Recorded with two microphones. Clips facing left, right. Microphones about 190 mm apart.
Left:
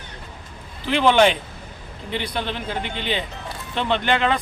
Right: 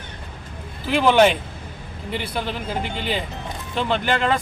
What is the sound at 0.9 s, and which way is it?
A man's voice, 5° right (ahead or behind).